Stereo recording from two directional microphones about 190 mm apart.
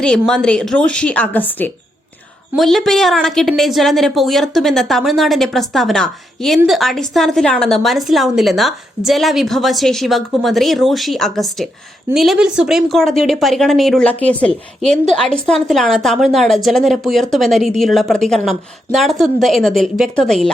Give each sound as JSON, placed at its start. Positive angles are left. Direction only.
{"t": 0.0, "sound": "a woman's voice", "side_deg": 5}